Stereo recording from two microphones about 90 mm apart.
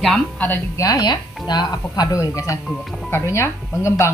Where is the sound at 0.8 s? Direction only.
45° left (ahead or behind).